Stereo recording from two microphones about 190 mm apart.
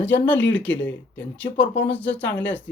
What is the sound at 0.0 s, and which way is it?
Speech, 10° left (ahead or behind).